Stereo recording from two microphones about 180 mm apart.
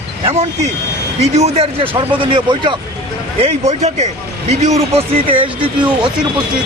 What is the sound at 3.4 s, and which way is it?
Speech, 35° right (ahead or behind).